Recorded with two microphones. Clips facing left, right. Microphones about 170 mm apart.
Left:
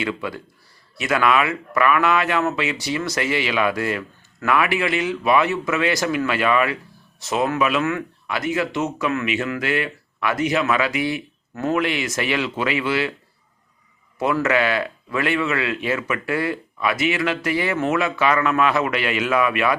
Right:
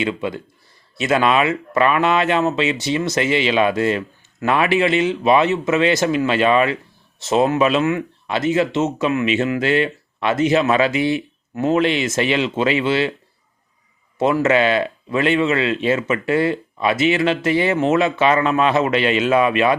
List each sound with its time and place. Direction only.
0.0 s speech: 20° right (ahead or behind)
14.2 s speech: 25° right (ahead or behind)